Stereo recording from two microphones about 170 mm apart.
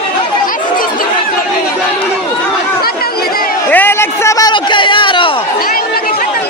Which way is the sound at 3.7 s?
10° left (ahead or behind).